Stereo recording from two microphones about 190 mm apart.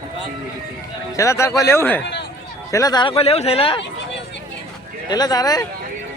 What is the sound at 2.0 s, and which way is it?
Speech, 65° left (ahead or behind).